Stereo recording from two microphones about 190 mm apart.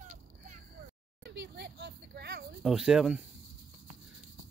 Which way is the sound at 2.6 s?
Centre (ahead or behind).